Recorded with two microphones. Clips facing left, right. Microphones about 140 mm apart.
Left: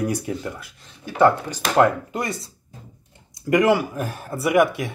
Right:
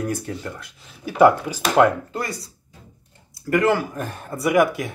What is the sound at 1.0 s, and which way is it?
Speech, 10° right (ahead or behind).